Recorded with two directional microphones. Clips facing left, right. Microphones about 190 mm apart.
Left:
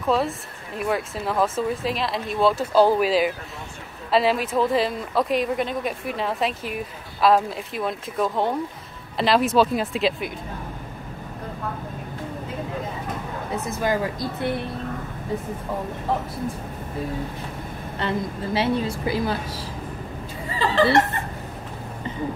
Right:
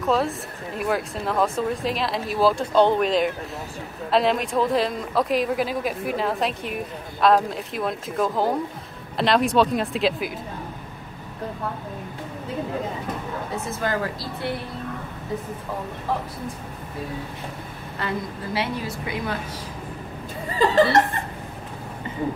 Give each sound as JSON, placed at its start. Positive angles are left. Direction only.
{"t": 0.0, "sound": "speech", "side_deg": 0}
{"t": 13.7, "sound": "speech", "side_deg": 15}
{"t": 17.9, "sound": "a woman's voice", "side_deg": 25}